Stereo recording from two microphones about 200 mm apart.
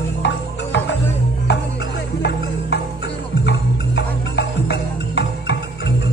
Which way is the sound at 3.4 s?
60° left (ahead or behind).